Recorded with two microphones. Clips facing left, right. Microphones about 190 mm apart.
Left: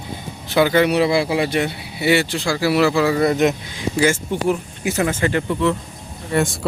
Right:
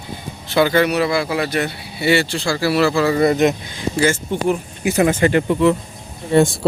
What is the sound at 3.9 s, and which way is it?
Speech, 10° left (ahead or behind).